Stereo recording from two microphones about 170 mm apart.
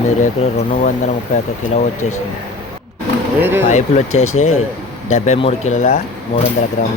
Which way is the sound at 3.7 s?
40° left (ahead or behind).